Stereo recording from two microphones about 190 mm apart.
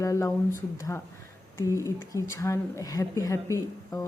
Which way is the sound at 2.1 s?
15° left (ahead or behind).